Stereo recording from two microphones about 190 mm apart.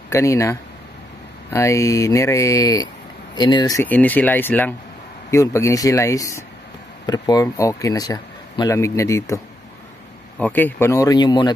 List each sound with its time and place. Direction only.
0.1 s speech: 15° left (ahead or behind)
3.8 s speech: 10° left (ahead or behind)
10.4 s speech: 10° left (ahead or behind)